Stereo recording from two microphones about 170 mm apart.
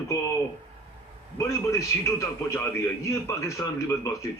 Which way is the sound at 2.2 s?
15° left (ahead or behind).